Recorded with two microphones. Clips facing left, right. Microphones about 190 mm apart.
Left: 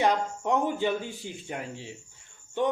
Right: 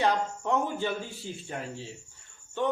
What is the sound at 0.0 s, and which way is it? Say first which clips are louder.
Speech: left 2 dB; 15° left (ahead or behind).